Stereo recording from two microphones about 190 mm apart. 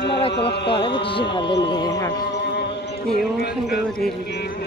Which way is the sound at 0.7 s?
25° left (ahead or behind).